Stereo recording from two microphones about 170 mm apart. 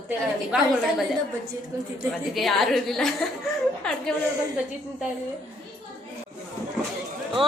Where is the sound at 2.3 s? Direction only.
Centre (ahead or behind).